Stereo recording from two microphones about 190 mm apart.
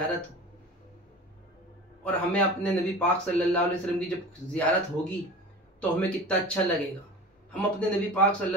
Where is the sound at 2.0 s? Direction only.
5° left (ahead or behind).